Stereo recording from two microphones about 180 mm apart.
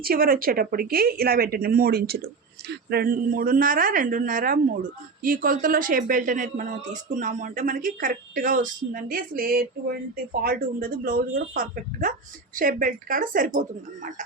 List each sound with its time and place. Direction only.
0.0 s a woman's voice: 55° right (ahead or behind)